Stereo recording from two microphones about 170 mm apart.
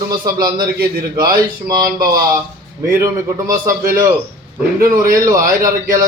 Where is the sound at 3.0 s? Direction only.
15° right (ahead or behind).